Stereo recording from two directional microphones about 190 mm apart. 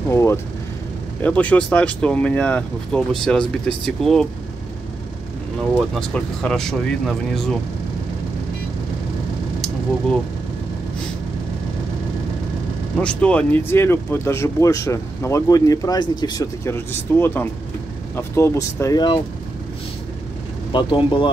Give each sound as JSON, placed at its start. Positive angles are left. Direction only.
{"t": 0.1, "sound": "speech", "side_deg": 15}
{"t": 5.9, "sound": "speech", "side_deg": 5}
{"t": 13.0, "sound": "speech", "side_deg": 5}
{"t": 20.7, "sound": "speech", "side_deg": 25}